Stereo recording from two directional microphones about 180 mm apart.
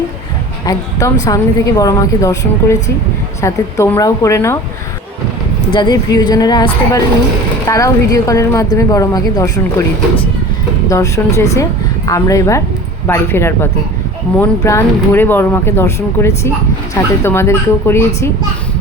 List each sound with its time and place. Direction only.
0.6 s a woman's voice: 20° left (ahead or behind)
5.7 s a woman's voice: 25° left (ahead or behind)
10.8 s speech: 15° left (ahead or behind)